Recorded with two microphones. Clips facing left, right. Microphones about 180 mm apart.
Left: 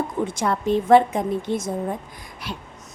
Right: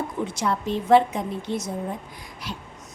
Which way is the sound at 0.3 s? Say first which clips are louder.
Left 4 dB; 50° left (ahead or behind).